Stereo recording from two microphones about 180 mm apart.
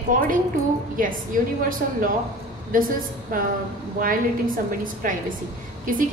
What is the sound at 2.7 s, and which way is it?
A woman's voice, 50° right (ahead or behind).